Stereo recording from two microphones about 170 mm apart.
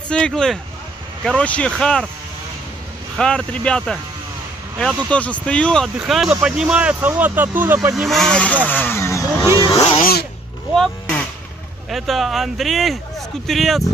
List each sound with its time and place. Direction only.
0.1 s speech: 5° left (ahead or behind)
3.2 s speech: 5° left (ahead or behind)
5.1 s speech: 10° left (ahead or behind); by 7.9 s 10° right (ahead or behind)
7.9 s speech: centre (ahead or behind); by 9.5 s 15° left (ahead or behind)
9.6 s speech: 25° left (ahead or behind)
10.7 s speech: centre (ahead or behind)